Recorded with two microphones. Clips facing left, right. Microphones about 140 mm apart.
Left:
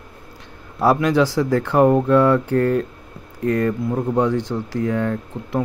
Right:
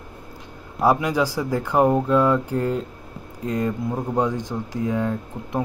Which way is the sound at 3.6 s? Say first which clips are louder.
Left 4 dB; 15° right (ahead or behind).